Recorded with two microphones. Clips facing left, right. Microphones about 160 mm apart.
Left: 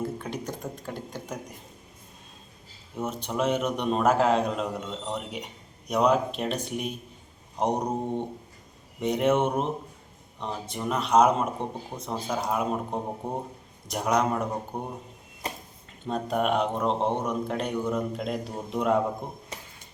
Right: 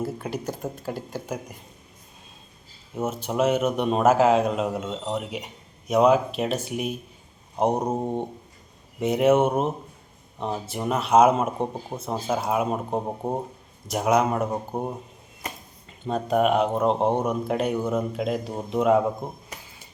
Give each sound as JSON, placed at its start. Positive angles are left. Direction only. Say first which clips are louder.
{"t": 0.0, "sound": "a man's voice", "louder": "right 3 dB", "side_deg": -5}
{"t": 2.9, "sound": "a man's voice", "louder": "right 4 dB", "side_deg": -5}
{"t": 7.8, "sound": "speech", "louder": "right 3 dB", "side_deg": -25}
{"t": 9.0, "sound": "a man's voice", "louder": "right 4 dB", "side_deg": -5}
{"t": 16.0, "sound": "a man's voice", "louder": "right 5 dB", "side_deg": 0}